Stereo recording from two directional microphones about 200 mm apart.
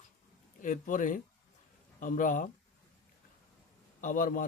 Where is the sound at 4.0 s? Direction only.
40° left (ahead or behind).